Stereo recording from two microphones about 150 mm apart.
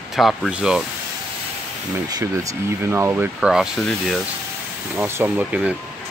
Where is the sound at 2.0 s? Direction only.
25° right (ahead or behind).